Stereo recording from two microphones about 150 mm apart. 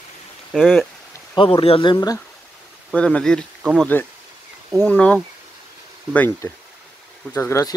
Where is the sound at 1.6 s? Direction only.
35° left (ahead or behind).